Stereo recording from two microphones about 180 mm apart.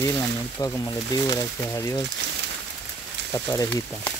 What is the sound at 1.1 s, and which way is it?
Speech, 20° left (ahead or behind).